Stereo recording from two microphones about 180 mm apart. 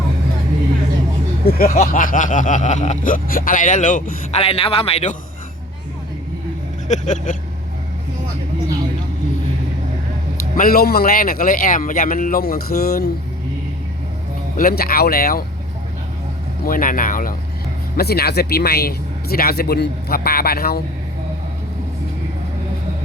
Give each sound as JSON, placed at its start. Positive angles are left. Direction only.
{"t": 1.5, "sound": "speech", "side_deg": 50}
{"t": 6.8, "sound": "speech", "side_deg": 40}
{"t": 10.6, "sound": "speech", "side_deg": 55}
{"t": 14.5, "sound": "speech", "side_deg": 55}
{"t": 16.6, "sound": "speech", "side_deg": 50}
{"t": 17.9, "sound": "speech", "side_deg": 60}